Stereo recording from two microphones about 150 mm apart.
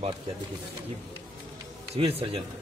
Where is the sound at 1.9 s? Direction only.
45° right (ahead or behind).